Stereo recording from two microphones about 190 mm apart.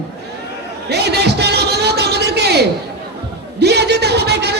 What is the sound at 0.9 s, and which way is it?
Music, 60° right (ahead or behind).